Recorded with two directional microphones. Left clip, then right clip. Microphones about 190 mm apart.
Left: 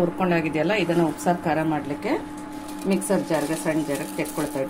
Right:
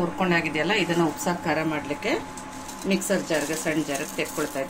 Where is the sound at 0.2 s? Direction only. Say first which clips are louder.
Left 1 dB; 45° left (ahead or behind).